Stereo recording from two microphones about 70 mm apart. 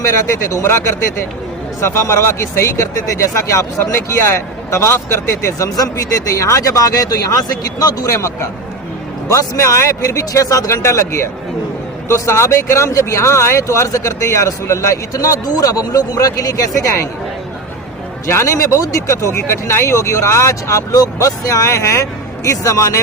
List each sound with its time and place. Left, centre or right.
0.0 s speech: left
18.3 s speech: left